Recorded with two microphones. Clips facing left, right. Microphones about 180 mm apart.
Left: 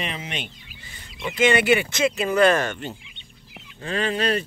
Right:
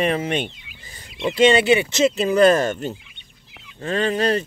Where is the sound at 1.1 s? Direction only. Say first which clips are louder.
Right 5 dB; 30° right (ahead or behind).